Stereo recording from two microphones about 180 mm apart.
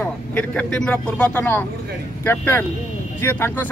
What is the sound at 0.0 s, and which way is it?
Speech, 10° left (ahead or behind).